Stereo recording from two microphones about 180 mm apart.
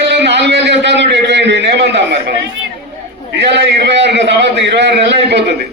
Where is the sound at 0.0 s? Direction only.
75° right (ahead or behind).